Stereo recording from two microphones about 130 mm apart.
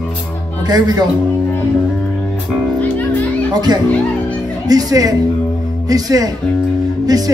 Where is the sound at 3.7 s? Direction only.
30° right (ahead or behind).